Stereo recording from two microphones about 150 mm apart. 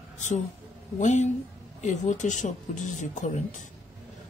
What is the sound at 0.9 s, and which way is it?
Speech, 55° left (ahead or behind).